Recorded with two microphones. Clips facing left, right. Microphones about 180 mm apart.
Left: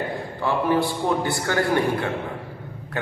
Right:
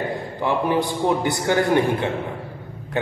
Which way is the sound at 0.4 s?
15° right (ahead or behind).